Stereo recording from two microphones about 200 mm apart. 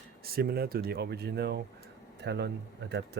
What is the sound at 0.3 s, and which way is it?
Speech, 50° right (ahead or behind).